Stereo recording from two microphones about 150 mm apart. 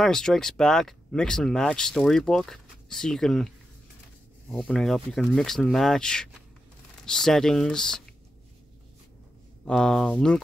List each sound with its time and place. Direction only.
0.0 s speech: 5° left (ahead or behind)
9.7 s speech: 5° left (ahead or behind)